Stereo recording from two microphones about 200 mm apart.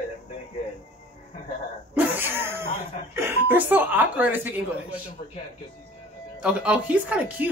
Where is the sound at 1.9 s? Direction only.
10° right (ahead or behind).